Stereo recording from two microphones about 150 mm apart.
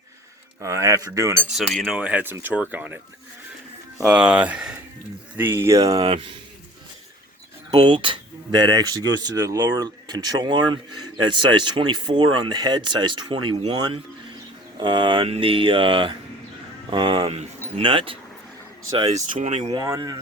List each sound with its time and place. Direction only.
0.6 s speech: 20° right (ahead or behind)
1.5 s speech: centre (ahead or behind)
4.0 s speech: 10° right (ahead or behind)
7.7 s speech: 30° right (ahead or behind); by 19.7 s 50° right (ahead or behind)
19.7 s speech: 25° right (ahead or behind)